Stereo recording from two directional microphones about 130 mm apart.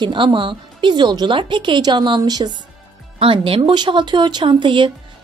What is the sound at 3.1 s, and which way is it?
A woman's voice, 45° right (ahead or behind).